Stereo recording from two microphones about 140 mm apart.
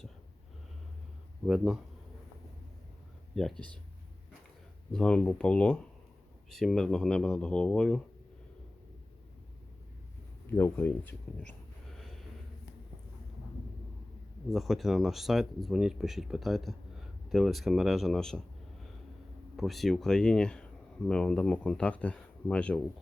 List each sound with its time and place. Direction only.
1.5 s speech: 5° right (ahead or behind)
3.5 s speech: 35° right (ahead or behind)
4.9 s speech: 5° left (ahead or behind)
10.6 s speech: 15° left (ahead or behind)
11.9 s snort: centre (ahead or behind)
14.5 s speech: centre (ahead or behind)
19.5 s speech: centre (ahead or behind)